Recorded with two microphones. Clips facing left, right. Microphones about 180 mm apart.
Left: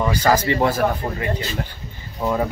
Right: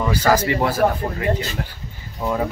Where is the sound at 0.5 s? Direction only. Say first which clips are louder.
Left 1 dB; 5° right (ahead or behind).